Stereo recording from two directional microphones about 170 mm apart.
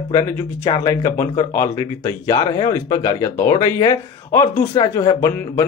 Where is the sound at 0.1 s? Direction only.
20° left (ahead or behind).